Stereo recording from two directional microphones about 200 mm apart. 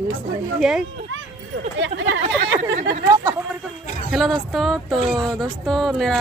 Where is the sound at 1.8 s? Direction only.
65° right (ahead or behind).